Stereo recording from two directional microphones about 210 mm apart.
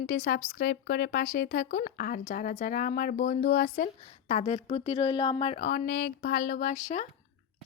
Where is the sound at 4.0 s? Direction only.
35° left (ahead or behind).